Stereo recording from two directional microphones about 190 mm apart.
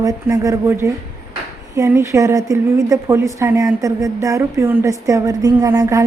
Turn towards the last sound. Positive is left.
turn(degrees=-15)  # may be behind; listen again after turning